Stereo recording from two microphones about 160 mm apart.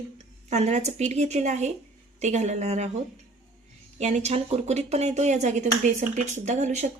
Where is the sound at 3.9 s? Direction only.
45° right (ahead or behind).